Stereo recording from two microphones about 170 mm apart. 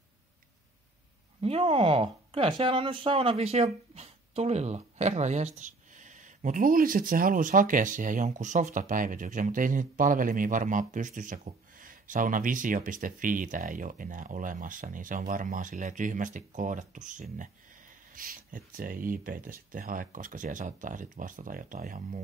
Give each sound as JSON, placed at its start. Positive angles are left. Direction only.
{"t": 1.4, "sound": "speech", "side_deg": -35}